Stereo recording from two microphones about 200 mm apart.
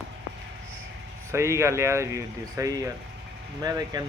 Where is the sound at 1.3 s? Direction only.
15° right (ahead or behind).